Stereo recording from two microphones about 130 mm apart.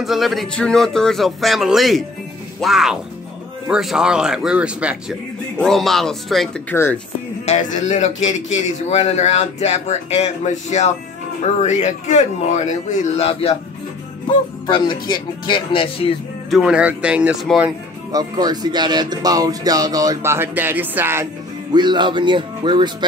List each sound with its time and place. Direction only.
0.0 s speech: centre (ahead or behind)
5.6 s speech: centre (ahead or behind)
6.7 s speech: 20° left (ahead or behind)
7.4 s a man's voice: 60° left (ahead or behind)
14.7 s speech: 35° left (ahead or behind)
16.4 s speech: 5° right (ahead or behind)
18.1 s speech: 30° right (ahead or behind)
21.7 s speech: 35° right (ahead or behind)